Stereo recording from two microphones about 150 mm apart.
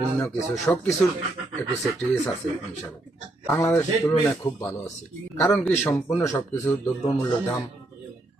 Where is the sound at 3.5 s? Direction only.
20° left (ahead or behind).